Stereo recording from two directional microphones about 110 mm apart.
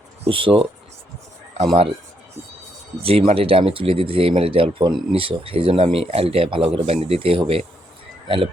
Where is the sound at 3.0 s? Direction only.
60° right (ahead or behind).